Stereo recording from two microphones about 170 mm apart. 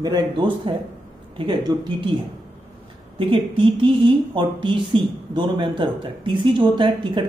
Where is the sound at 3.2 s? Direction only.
30° right (ahead or behind).